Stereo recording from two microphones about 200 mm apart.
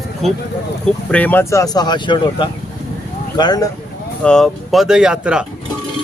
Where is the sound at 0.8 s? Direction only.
5° left (ahead or behind).